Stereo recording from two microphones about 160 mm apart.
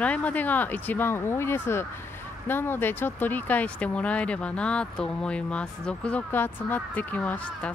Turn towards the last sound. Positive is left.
turn(degrees=10)  # may be behind; listen again after turning